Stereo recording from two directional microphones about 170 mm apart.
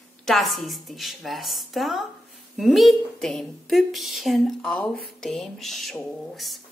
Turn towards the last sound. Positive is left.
turn(degrees=0)  # may be behind; listen again after turning